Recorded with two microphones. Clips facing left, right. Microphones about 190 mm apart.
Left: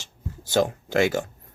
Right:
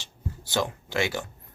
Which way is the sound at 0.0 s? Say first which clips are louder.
Right 1 dB; 45° left (ahead or behind).